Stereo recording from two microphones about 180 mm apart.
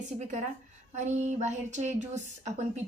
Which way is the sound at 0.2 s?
40° right (ahead or behind).